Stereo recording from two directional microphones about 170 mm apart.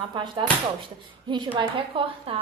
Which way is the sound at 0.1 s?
25° right (ahead or behind).